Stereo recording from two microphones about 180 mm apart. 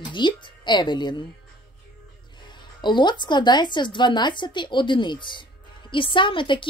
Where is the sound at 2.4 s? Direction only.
25° left (ahead or behind).